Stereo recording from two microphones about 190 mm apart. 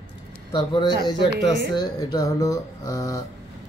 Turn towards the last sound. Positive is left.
turn(degrees=15)  # may be behind; listen again after turning